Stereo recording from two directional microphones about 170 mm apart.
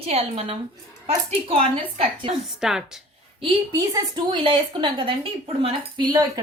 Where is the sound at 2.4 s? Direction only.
Centre (ahead or behind).